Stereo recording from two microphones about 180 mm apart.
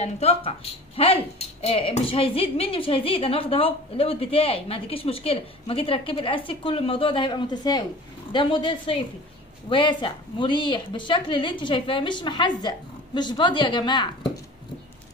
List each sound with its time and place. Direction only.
0.0 s a woman's voice: 35° left (ahead or behind)